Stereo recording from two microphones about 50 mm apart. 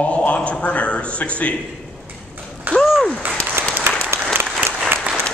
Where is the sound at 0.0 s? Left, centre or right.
Left.